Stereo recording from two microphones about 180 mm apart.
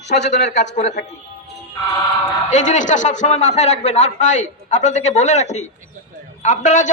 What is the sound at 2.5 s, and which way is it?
A man's voice, 40° left (ahead or behind).